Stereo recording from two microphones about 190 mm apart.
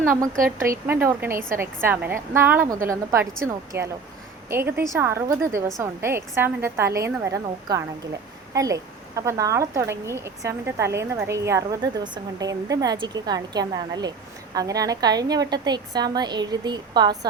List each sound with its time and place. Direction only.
0.9 s a woman's voice: 10° right (ahead or behind)